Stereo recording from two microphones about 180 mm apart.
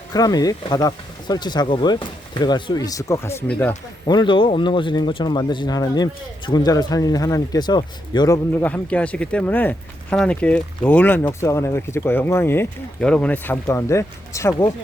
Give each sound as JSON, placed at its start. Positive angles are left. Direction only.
{"t": 0.1, "sound": "speech", "side_deg": 20}
{"t": 4.0, "sound": "speech", "side_deg": 25}
{"t": 8.6, "sound": "speech", "side_deg": 5}